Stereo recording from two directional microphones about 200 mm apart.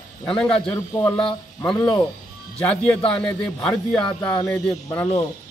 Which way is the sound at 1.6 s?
25° left (ahead or behind).